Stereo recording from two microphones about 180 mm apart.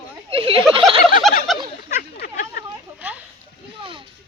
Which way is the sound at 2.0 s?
55° left (ahead or behind).